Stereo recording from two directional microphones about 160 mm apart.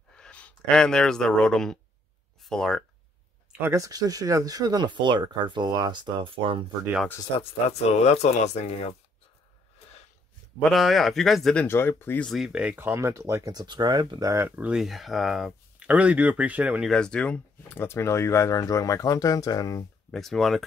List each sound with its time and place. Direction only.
0.1 s speech: 5° left (ahead or behind)
3.5 s speech: 15° right (ahead or behind); by 6.6 s 35° right (ahead or behind)
7.3 s speech: 40° left (ahead or behind)
10.6 s speech: centre (ahead or behind)
11.6 s speech: 15° left (ahead or behind)
12.3 s speech: 5° right (ahead or behind)
16.9 s speech: 5° left (ahead or behind); by 19.9 s 20° left (ahead or behind)
20.1 s speech: centre (ahead or behind)